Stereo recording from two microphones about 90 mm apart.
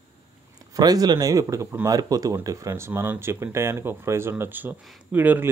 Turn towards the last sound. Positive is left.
turn(degrees=-20)  # may be behind; listen again after turning